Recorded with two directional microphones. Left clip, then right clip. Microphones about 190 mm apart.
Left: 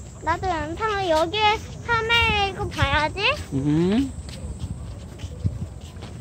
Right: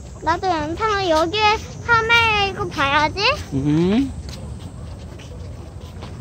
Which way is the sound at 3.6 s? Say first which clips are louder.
Right 3 dB; centre (ahead or behind).